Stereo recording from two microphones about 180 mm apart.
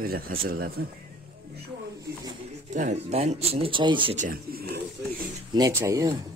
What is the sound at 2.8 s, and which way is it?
Speech, 40° right (ahead or behind).